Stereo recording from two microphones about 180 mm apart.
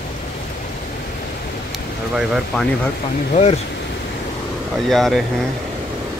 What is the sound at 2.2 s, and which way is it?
Speech, 5° right (ahead or behind).